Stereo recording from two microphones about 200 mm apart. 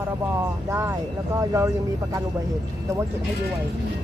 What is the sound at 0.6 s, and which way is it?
Speech, 10° right (ahead or behind).